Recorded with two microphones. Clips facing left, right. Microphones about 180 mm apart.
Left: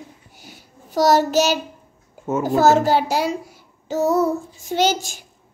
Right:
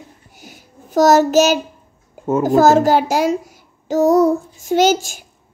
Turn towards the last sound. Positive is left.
turn(degrees=-45)  # may be behind; listen again after turning